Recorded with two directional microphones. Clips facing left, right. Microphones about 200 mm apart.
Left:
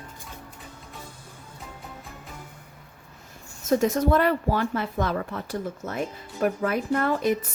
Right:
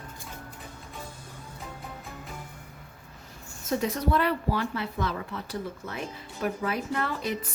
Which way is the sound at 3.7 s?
45° left (ahead or behind).